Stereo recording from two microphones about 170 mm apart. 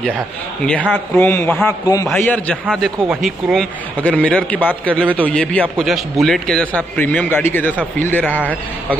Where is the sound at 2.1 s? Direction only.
10° left (ahead or behind).